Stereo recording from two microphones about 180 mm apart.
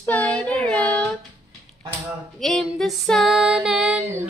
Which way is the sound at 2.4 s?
Centre (ahead or behind).